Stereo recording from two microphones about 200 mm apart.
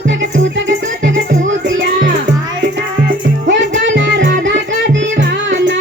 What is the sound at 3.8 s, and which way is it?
Music, 70° right (ahead or behind).